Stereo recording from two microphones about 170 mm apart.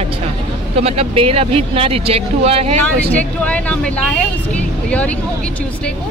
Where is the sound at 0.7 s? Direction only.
35° right (ahead or behind).